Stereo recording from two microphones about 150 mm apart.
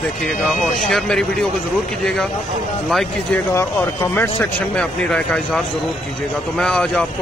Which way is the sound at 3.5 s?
15° left (ahead or behind).